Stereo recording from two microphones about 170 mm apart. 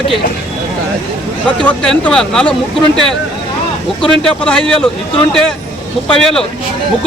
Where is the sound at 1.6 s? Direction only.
5° left (ahead or behind).